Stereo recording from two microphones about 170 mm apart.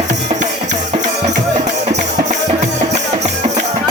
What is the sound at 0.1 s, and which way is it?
Music, 45° right (ahead or behind).